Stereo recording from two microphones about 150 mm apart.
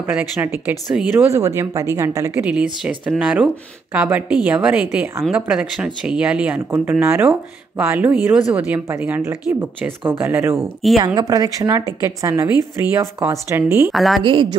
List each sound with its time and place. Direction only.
0.0 s a woman's voice: 15° right (ahead or behind)
2.4 s speech: 5° right (ahead or behind)
5.3 s a woman's voice: 5° right (ahead or behind)
10.6 s a woman's voice: centre (ahead or behind)
11.1 s a woman's voice: 25° right (ahead or behind)
13.9 s a woman's voice: centre (ahead or behind)
14.2 s a woman's voice: 35° right (ahead or behind)